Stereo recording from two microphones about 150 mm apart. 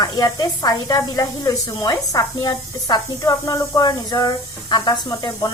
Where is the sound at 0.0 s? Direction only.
25° left (ahead or behind).